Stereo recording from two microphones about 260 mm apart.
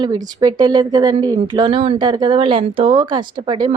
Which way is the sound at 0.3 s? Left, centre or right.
Centre.